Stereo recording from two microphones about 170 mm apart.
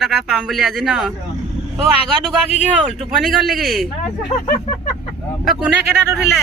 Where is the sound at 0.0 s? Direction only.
5° right (ahead or behind).